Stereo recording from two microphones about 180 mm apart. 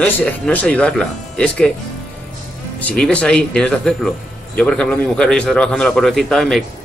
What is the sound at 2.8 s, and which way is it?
A man's voice, 5° left (ahead or behind).